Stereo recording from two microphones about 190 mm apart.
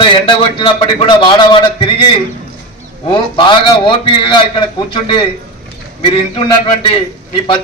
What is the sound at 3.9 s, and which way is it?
A man's voice, 25° left (ahead or behind).